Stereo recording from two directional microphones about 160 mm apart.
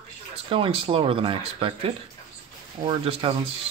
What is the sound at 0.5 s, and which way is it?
Speech, 35° right (ahead or behind).